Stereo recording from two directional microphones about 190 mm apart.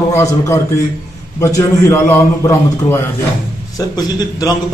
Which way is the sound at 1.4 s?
15° left (ahead or behind).